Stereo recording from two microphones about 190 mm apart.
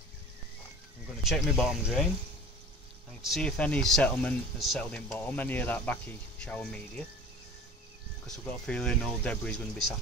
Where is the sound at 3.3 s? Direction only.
5° left (ahead or behind).